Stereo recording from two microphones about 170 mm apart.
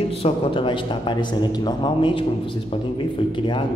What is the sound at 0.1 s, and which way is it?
Speech, 35° left (ahead or behind).